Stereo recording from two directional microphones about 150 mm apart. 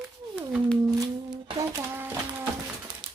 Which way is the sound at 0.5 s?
Centre (ahead or behind).